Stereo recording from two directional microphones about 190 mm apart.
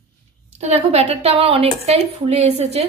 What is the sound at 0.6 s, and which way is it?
A woman's voice, 35° right (ahead or behind).